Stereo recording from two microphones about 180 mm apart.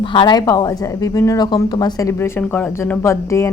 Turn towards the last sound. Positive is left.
turn(degrees=15)  # may be behind; listen again after turning